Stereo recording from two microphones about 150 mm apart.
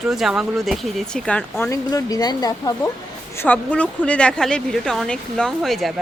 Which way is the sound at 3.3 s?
10° left (ahead or behind).